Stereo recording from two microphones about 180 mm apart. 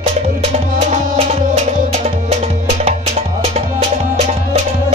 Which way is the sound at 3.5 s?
35° right (ahead or behind).